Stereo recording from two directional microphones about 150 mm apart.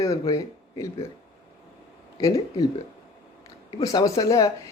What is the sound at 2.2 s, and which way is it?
Speech, 20° left (ahead or behind).